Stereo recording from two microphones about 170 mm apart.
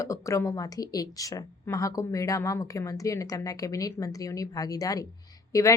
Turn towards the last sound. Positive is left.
turn(degrees=20)  # may be behind; listen again after turning